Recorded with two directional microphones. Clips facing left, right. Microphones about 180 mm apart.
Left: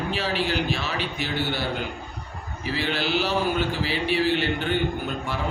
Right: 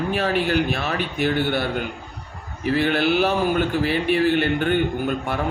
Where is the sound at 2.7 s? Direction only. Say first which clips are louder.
Right 7 dB; 55° right (ahead or behind).